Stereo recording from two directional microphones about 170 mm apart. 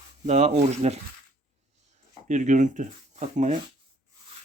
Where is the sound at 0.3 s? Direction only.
40° right (ahead or behind).